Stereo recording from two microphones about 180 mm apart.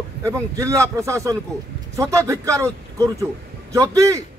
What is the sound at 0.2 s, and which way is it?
A man's voice, 15° right (ahead or behind).